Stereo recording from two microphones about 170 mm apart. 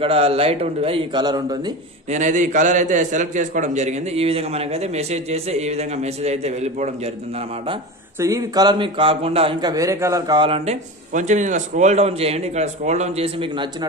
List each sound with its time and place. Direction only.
0.0 s a man's voice: 35° right (ahead or behind)
2.0 s a man's voice: 45° right (ahead or behind)
8.2 s a man's voice: 20° right (ahead or behind)